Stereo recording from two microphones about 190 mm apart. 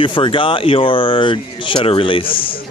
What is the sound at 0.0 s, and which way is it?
Speech, 25° left (ahead or behind).